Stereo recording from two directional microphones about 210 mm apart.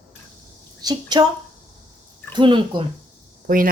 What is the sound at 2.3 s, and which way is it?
Speech, 25° right (ahead or behind).